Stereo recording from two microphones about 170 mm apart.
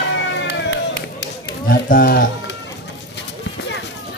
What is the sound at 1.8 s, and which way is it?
Speech, 60° left (ahead or behind).